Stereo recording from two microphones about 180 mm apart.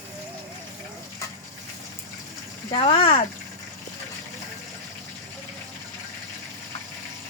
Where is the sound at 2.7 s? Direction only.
30° left (ahead or behind).